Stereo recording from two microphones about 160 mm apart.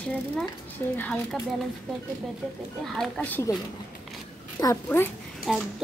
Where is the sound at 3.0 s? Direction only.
10° left (ahead or behind).